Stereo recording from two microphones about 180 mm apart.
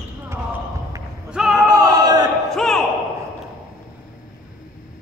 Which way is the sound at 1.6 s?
20° right (ahead or behind).